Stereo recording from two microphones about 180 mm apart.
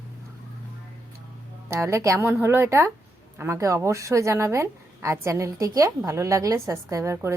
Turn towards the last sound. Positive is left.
turn(degrees=-15)  # may be behind; listen again after turning